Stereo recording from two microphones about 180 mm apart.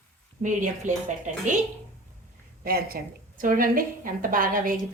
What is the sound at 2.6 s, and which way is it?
A woman's voice, 55° right (ahead or behind).